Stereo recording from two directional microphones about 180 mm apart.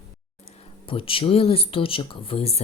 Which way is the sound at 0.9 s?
30° left (ahead or behind).